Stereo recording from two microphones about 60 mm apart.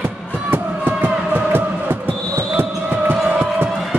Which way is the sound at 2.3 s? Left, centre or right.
Right.